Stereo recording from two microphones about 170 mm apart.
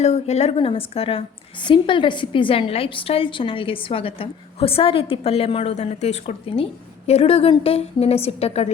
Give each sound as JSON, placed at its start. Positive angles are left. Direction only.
{"t": 0.0, "sound": "a woman's voice", "side_deg": 40}